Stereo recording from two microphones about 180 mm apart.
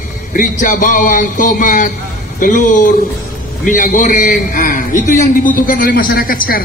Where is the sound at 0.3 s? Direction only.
45° left (ahead or behind).